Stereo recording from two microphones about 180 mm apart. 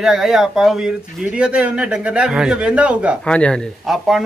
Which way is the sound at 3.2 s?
5° left (ahead or behind).